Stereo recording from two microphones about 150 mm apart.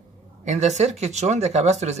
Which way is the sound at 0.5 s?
50° right (ahead or behind).